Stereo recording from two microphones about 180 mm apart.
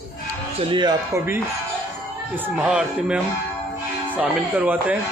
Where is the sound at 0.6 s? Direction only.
25° right (ahead or behind).